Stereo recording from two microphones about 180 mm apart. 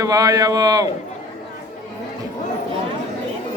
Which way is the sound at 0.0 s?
20° right (ahead or behind).